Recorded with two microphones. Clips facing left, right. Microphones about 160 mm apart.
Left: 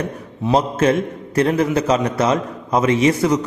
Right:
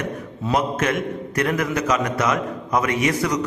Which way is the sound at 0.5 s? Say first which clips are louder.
Left 5 dB; 30° left (ahead or behind).